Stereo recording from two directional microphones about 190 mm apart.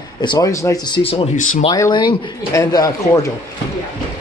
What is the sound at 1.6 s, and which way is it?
A man's voice, 25° left (ahead or behind).